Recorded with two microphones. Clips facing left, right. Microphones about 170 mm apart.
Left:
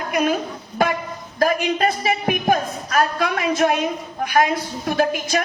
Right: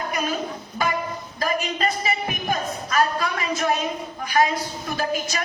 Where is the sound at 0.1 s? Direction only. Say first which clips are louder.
Left 9 dB; 55° left (ahead or behind).